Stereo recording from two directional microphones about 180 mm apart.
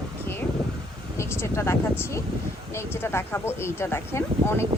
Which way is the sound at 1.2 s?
15° left (ahead or behind).